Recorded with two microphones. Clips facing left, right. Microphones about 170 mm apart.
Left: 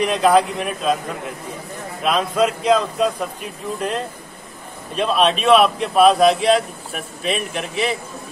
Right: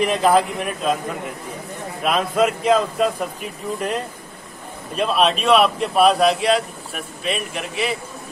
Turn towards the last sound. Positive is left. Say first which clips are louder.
# left 2 dB
turn(degrees=0)  # may be behind; listen again after turning